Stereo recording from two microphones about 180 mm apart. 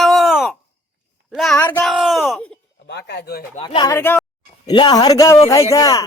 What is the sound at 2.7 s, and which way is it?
Speech, 70° left (ahead or behind).